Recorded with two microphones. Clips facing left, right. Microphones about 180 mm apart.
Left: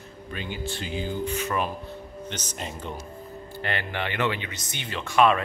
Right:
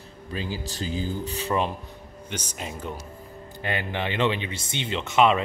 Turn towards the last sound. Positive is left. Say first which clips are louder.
# right 1 dB
turn(degrees=-20)  # may be behind; listen again after turning